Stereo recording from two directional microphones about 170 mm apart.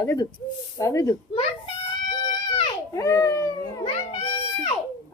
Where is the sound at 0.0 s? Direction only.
20° left (ahead or behind).